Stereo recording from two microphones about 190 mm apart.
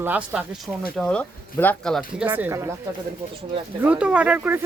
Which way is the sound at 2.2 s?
10° right (ahead or behind).